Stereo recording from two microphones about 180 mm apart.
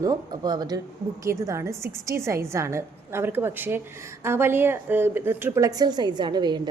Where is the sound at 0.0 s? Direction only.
20° right (ahead or behind).